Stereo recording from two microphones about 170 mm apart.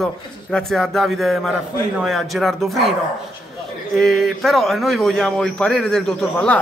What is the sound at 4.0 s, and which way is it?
A man's voice, centre (ahead or behind).